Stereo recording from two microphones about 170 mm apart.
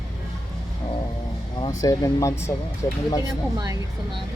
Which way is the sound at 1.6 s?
20° left (ahead or behind).